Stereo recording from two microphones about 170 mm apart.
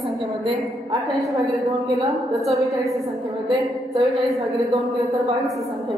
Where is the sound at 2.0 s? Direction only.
Centre (ahead or behind).